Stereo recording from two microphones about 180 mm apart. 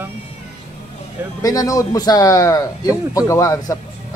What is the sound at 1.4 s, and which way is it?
A man's voice, 20° left (ahead or behind).